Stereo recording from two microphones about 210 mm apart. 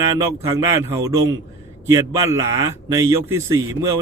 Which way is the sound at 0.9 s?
15° right (ahead or behind).